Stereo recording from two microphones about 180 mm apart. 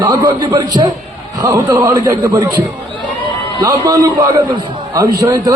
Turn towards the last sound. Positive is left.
turn(degrees=-20)  # may be behind; listen again after turning